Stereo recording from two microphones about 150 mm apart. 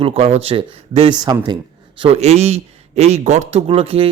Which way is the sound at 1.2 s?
25° right (ahead or behind).